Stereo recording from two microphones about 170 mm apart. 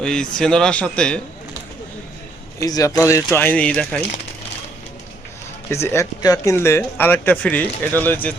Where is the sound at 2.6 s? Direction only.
20° left (ahead or behind).